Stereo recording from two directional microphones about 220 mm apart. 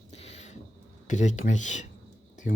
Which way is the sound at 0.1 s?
30° left (ahead or behind).